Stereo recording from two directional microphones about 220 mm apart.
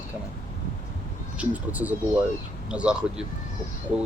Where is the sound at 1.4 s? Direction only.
5° right (ahead or behind).